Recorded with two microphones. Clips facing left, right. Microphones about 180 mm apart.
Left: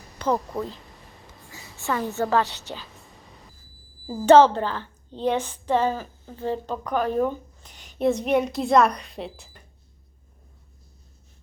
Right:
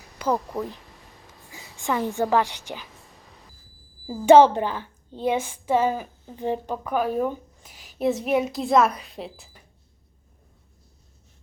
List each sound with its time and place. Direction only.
0.2 s a woman's voice: 5° right (ahead or behind)
1.5 s a sound: 15° right (ahead or behind)
1.8 s a woman's voice: 15° right (ahead or behind)
4.3 s a woman's voice: 15° right (ahead or behind)